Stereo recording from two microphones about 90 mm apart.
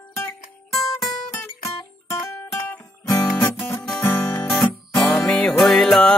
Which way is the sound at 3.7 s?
5° left (ahead or behind).